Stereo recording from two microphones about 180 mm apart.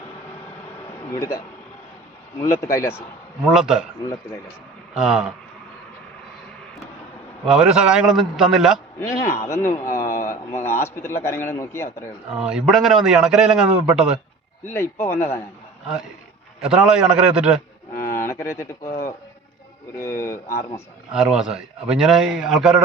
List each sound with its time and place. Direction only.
1.1 s a man's voice: 15° left (ahead or behind)
2.6 s a man's voice: 15° left (ahead or behind)
3.5 s a man's voice: 5° right (ahead or behind)
4.9 s a man's voice: 5° right (ahead or behind)
7.4 s a man's voice: 5° right (ahead or behind)
9.0 s a man's voice: 15° left (ahead or behind)
12.4 s a man's voice: 5° right (ahead or behind)
14.6 s a man's voice: 10° left (ahead or behind)
16.6 s a man's voice: 5° right (ahead or behind)
18.1 s speech: 15° left (ahead or behind)
20.0 s a man's voice: 15° left (ahead or behind)
21.1 s a man's voice: 5° right (ahead or behind)